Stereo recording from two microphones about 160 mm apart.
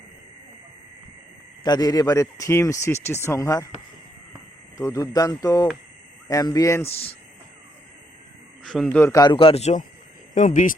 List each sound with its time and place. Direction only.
1.6 s a man's voice: 25° left (ahead or behind)
4.8 s a man's voice: 20° left (ahead or behind)
6.8 s a man's voice: 40° left (ahead or behind)
8.6 s a man's voice: 5° left (ahead or behind)
9.1 s a man's voice: 30° left (ahead or behind); by 10.8 s 55° left (ahead or behind)